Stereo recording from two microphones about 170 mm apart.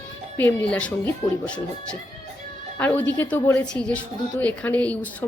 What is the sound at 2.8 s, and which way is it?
Speech, 10° left (ahead or behind).